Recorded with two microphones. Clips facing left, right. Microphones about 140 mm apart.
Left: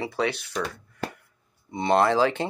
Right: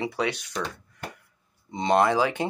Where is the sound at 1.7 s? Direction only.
20° right (ahead or behind).